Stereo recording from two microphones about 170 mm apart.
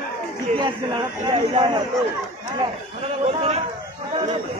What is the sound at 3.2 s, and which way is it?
Speech, 40° right (ahead or behind).